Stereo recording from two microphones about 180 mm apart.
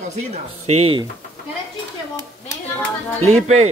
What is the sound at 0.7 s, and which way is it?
Speech, 30° right (ahead or behind).